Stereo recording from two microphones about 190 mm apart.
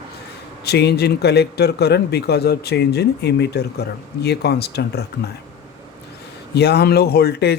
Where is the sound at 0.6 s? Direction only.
60° left (ahead or behind).